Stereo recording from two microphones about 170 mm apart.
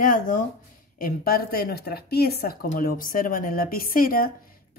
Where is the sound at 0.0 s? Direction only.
50° left (ahead or behind).